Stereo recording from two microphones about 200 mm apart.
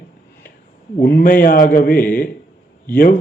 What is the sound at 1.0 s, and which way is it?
A man's voice, 45° left (ahead or behind).